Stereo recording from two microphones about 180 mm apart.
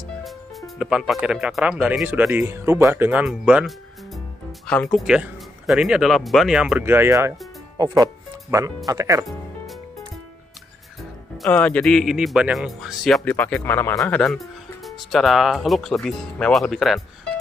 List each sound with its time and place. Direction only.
0.2 s speech: centre (ahead or behind); by 9.2 s 20° right (ahead or behind)
11.0 s speech: centre (ahead or behind)